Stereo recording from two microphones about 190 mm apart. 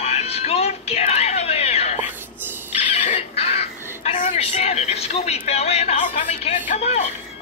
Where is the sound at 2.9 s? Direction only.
40° left (ahead or behind).